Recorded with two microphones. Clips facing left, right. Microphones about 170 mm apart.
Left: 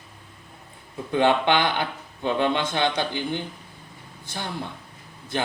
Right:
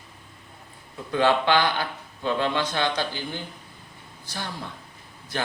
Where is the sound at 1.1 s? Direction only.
20° left (ahead or behind).